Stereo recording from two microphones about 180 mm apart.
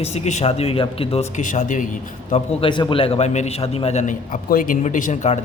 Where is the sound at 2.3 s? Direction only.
30° left (ahead or behind).